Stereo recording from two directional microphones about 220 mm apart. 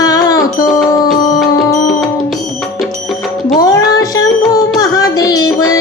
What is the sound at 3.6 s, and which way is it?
Music, 15° left (ahead or behind).